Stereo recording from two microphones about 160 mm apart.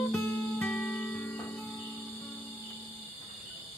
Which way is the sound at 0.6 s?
5° left (ahead or behind).